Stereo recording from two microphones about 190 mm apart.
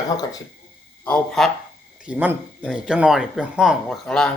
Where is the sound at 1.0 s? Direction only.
5° left (ahead or behind).